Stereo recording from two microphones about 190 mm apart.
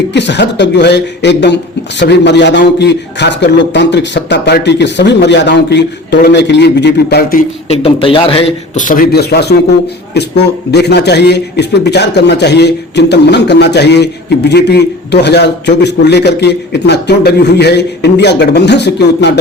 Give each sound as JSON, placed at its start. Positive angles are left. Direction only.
{"t": 0.1, "sound": "a man's voice", "side_deg": 65}
{"t": 7.7, "sound": "a man's voice", "side_deg": 30}
{"t": 8.7, "sound": "a man's voice", "side_deg": 45}